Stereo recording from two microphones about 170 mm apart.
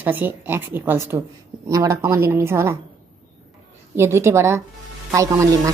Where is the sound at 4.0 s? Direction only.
15° right (ahead or behind).